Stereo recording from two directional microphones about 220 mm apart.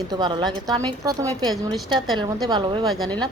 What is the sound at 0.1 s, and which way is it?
A woman's voice, 20° right (ahead or behind).